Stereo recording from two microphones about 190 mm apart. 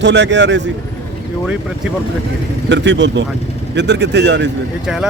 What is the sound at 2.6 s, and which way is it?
Speech, 70° right (ahead or behind).